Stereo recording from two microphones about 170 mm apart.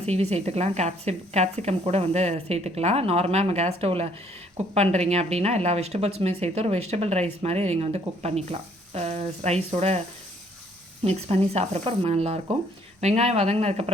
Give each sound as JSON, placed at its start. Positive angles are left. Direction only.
{"t": 0.0, "sound": "speech", "side_deg": -40}
{"t": 11.0, "sound": "speech", "side_deg": -40}